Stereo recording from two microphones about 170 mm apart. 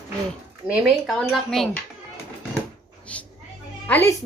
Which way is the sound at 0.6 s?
Centre (ahead or behind).